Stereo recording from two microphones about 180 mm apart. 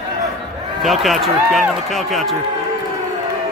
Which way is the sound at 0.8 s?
Centre (ahead or behind).